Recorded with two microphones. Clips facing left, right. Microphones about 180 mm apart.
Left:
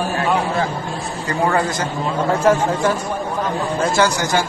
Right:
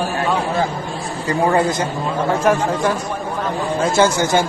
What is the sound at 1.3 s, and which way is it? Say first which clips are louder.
Speech: right 3 dB; 20° right (ahead or behind).